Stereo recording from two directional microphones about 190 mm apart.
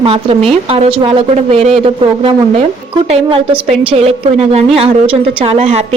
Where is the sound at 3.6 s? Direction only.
30° right (ahead or behind).